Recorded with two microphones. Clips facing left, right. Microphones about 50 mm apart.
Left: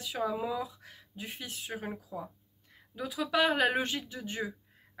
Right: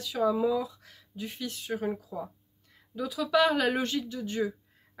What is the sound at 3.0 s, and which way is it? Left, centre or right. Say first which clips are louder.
Speech: right 4 dB; centre.